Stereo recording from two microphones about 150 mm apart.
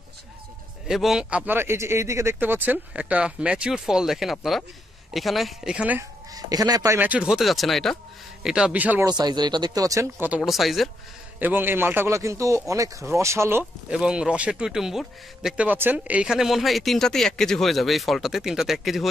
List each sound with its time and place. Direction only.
0.8 s speech: centre (ahead or behind)
6.3 s speech: 25° right (ahead or behind)
7.0 s speech: 10° right (ahead or behind)
9.0 s speech: 25° right (ahead or behind)
10.4 s speech: centre (ahead or behind)
11.3 s speech: 10° right (ahead or behind)